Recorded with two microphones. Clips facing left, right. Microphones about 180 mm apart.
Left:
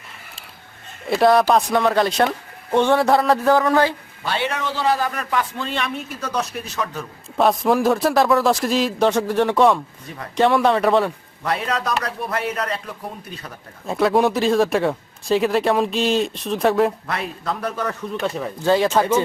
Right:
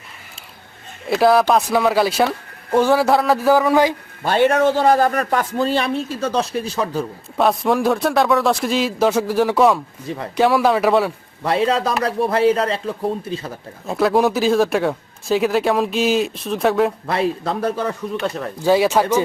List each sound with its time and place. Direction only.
1.0 s speech: centre (ahead or behind)
4.2 s a man's voice: 45° right (ahead or behind); by 7.0 s 30° right (ahead or behind)
7.3 s speech: centre (ahead or behind)
11.4 s speech: 30° right (ahead or behind)
13.8 s speech: centre (ahead or behind)
17.1 s a man's voice: 30° right (ahead or behind)
18.2 s speech: 5° left (ahead or behind)
18.6 s speech: 10° right (ahead or behind)